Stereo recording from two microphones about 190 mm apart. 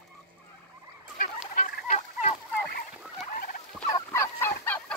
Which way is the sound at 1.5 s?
40° left (ahead or behind).